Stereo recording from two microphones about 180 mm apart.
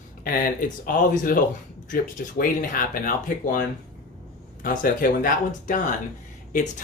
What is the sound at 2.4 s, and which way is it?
Speech, 50° left (ahead or behind).